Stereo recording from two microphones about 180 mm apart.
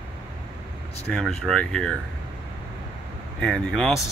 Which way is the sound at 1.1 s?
5° left (ahead or behind).